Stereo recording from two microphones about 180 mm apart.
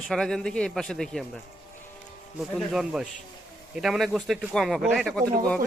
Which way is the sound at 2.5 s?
Centre (ahead or behind).